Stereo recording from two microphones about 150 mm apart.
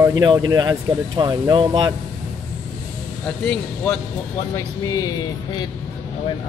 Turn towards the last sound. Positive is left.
turn(degrees=25)  # may be behind; listen again after turning